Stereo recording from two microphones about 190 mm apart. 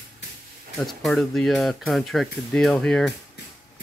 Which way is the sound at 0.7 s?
Centre (ahead or behind).